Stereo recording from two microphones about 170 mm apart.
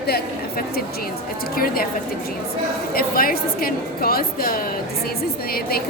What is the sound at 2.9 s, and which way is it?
A woman's voice, 60° left (ahead or behind).